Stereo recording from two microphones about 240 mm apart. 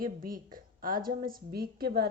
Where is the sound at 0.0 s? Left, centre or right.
Right.